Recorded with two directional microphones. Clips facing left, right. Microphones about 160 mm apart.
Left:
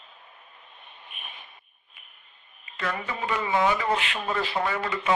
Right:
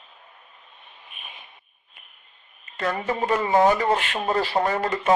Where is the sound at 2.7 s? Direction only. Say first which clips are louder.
Right 6 dB; 40° right (ahead or behind).